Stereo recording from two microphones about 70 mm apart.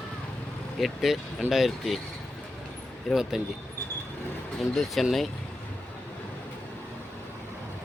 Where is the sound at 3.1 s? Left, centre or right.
Centre.